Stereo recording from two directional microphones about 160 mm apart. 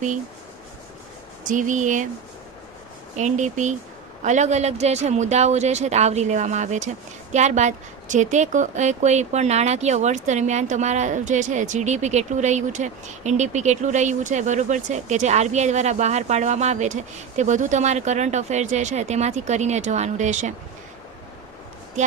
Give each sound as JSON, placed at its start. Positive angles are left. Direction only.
{"t": 1.5, "sound": "speech", "side_deg": -50}
{"t": 3.2, "sound": "speech", "side_deg": -50}